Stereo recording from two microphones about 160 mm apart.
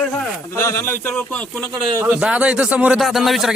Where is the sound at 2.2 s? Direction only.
5° right (ahead or behind).